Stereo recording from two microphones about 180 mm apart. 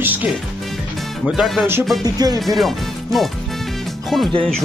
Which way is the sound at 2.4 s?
Centre (ahead or behind).